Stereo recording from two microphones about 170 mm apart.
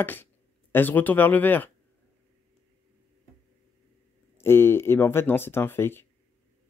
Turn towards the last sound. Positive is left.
turn(degrees=15)  # may be behind; listen again after turning